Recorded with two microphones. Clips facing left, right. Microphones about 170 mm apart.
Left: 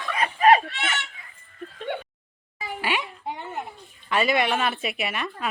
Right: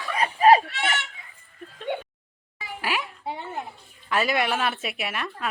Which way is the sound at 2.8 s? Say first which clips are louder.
Left 1 dB; centre (ahead or behind).